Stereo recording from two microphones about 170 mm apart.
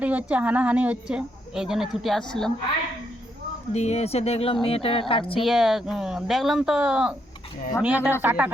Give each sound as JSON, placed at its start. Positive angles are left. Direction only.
{"t": 0.0, "sound": "a woman's voice", "side_deg": -10}
{"t": 3.7, "sound": "speech", "side_deg": 40}
{"t": 5.5, "sound": "a woman's voice", "side_deg": 0}